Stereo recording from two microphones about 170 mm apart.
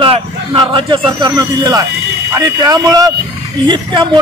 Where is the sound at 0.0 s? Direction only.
30° right (ahead or behind).